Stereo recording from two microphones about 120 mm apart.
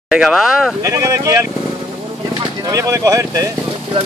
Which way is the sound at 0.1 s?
Centre (ahead or behind).